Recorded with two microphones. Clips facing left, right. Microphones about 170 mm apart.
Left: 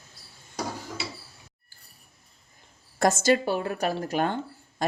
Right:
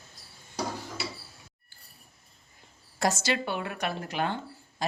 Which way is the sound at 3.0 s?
50° left (ahead or behind).